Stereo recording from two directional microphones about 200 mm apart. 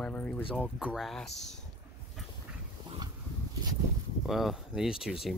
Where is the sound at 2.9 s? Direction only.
25° right (ahead or behind).